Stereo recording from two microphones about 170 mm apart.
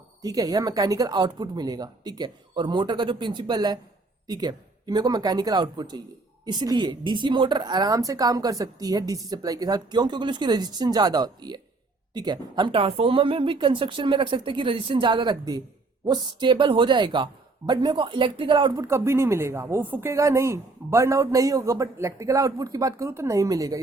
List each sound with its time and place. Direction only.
0.2 s speech: 20° right (ahead or behind)